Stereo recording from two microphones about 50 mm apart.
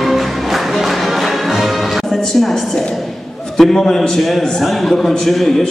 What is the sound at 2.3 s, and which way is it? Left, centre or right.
A woman's voice, centre.